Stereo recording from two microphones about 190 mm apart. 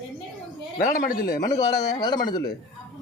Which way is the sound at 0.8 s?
50° left (ahead or behind).